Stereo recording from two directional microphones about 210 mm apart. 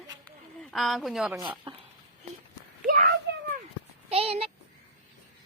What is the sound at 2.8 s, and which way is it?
Speech, 45° right (ahead or behind).